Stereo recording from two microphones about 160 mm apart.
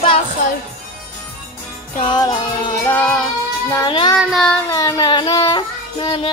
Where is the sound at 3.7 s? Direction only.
25° left (ahead or behind).